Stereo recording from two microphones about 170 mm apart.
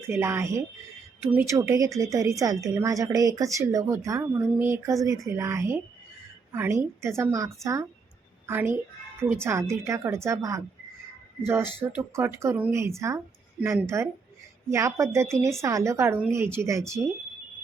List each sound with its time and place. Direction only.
0.0 s a woman's voice: 15° right (ahead or behind)